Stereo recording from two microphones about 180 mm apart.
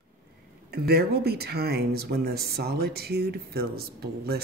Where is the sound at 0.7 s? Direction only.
60° right (ahead or behind).